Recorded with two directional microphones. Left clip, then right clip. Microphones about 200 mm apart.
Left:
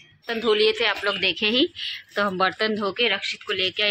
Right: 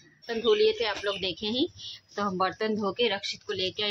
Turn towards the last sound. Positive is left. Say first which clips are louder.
# left 7 dB
turn(degrees=-10)  # may be behind; listen again after turning